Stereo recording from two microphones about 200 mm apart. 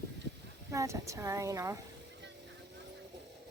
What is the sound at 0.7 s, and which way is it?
Speech, 15° right (ahead or behind).